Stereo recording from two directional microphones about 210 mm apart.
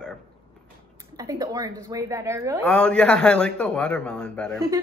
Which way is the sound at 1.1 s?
15° right (ahead or behind).